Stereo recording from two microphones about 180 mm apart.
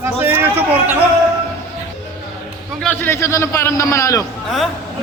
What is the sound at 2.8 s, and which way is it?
A man's voice, 10° left (ahead or behind).